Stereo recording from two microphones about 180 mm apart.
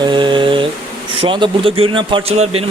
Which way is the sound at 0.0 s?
25° right (ahead or behind).